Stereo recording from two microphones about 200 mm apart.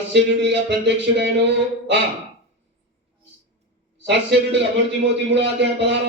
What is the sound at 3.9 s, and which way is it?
A man's voice, 60° right (ahead or behind).